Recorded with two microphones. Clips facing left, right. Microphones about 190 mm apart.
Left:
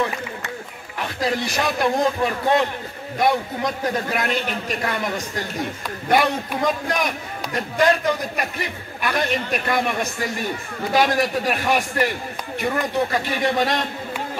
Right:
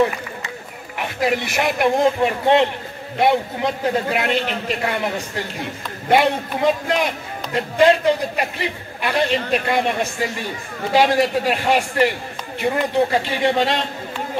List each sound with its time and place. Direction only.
1.2 s a man's voice: 20° right (ahead or behind)